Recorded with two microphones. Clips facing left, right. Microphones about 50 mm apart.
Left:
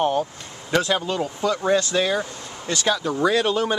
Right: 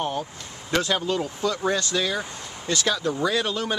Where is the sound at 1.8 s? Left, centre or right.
Centre.